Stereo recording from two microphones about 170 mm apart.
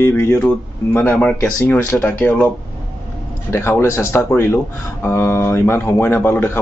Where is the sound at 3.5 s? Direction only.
15° left (ahead or behind).